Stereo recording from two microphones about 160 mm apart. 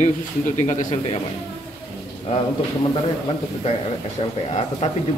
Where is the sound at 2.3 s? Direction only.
40° left (ahead or behind).